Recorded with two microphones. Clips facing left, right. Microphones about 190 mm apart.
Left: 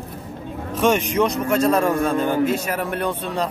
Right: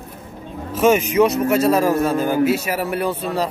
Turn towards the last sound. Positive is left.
turn(degrees=-5)  # may be behind; listen again after turning